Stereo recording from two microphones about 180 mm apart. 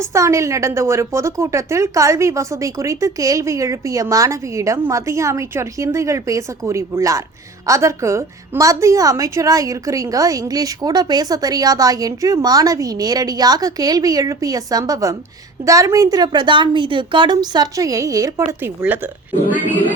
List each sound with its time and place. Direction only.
0.0 s a woman's voice: 15° right (ahead or behind)